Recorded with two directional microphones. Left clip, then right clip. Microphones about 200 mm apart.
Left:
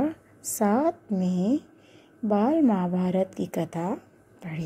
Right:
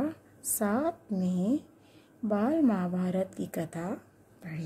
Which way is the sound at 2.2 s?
15° left (ahead or behind).